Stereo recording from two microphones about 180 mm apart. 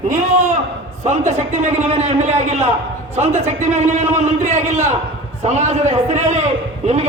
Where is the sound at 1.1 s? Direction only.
40° right (ahead or behind).